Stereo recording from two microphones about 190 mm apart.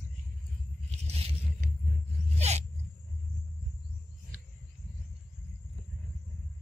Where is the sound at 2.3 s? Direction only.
35° right (ahead or behind).